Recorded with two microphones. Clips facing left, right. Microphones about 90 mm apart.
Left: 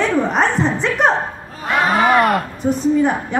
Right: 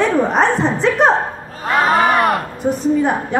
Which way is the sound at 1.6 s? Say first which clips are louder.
Right 2 dB; 30° right (ahead or behind).